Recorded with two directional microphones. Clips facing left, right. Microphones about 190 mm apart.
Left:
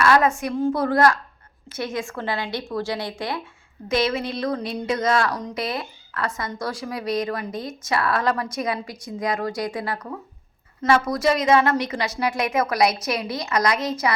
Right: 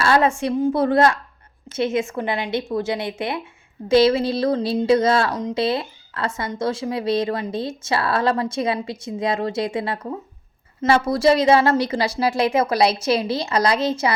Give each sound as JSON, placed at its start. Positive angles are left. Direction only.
{"t": 0.0, "sound": "a woman's voice", "side_deg": -30}